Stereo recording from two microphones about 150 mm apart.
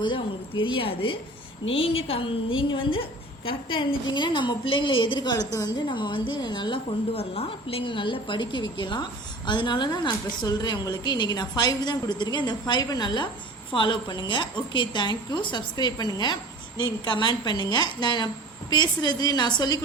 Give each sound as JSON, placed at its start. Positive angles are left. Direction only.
{"t": 0.0, "sound": "a woman's voice", "side_deg": 30}